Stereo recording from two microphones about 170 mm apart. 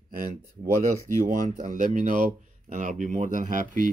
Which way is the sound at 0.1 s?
55° right (ahead or behind).